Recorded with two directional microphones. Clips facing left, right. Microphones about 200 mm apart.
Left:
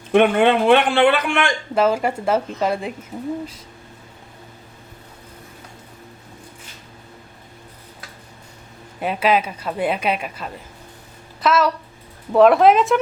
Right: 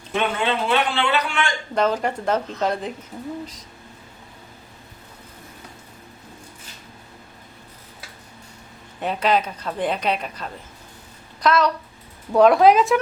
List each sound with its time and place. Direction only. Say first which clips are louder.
0.1 s a man's voice: left 9 dB; 55° left (ahead or behind)
1.7 s a woman's voice: left 3 dB; 5° left (ahead or behind)
9.0 s a woman's voice: left 2 dB; 5° left (ahead or behind)